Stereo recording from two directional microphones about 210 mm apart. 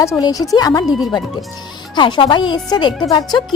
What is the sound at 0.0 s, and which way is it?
Speech, 15° left (ahead or behind).